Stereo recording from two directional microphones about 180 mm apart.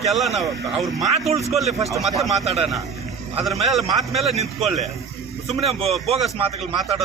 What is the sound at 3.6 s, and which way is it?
Speech, centre (ahead or behind).